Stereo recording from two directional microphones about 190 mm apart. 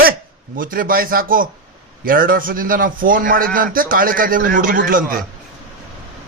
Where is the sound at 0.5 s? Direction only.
45° right (ahead or behind).